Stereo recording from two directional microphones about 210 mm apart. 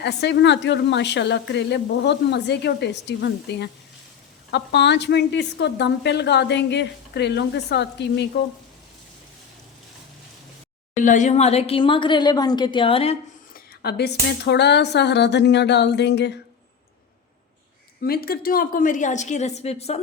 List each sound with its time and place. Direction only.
0.0 s a woman's voice: 55° left (ahead or behind)
11.0 s a woman's voice: 35° left (ahead or behind)
13.5 s speech: 50° left (ahead or behind)
18.0 s a woman's voice: 45° left (ahead or behind); by 20.0 s 30° left (ahead or behind)